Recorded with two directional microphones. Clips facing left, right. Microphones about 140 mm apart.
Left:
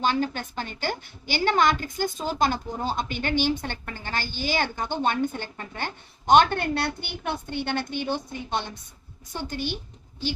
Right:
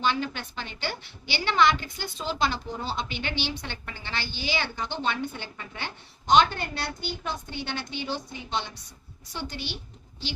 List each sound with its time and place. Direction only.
0.0 s a woman's voice: 45° left (ahead or behind)